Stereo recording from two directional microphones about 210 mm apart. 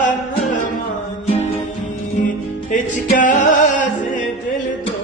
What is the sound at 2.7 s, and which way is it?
Music, 40° left (ahead or behind).